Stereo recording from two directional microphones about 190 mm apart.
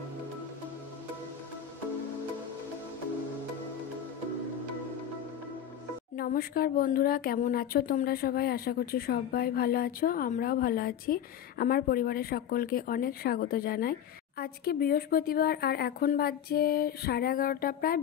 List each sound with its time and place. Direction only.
6.1 s speech: 50° left (ahead or behind)